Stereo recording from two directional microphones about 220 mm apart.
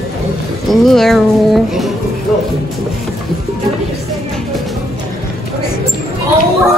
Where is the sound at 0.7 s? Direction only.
Centre (ahead or behind).